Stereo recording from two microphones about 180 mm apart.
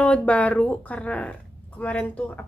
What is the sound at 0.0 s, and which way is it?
A woman's voice, 5° left (ahead or behind).